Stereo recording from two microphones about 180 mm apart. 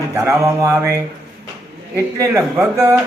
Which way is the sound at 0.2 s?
15° right (ahead or behind).